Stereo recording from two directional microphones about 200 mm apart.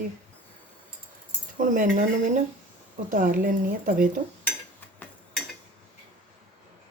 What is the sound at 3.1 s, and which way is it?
Speech, 45° right (ahead or behind).